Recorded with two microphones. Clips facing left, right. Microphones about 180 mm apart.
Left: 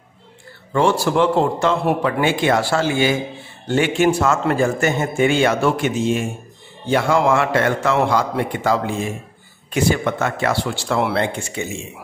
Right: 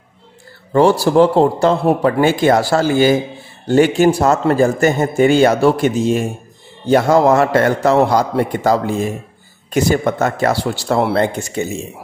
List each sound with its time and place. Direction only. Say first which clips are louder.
0.7 s a man's voice: right 6 dB; 35° right (ahead or behind)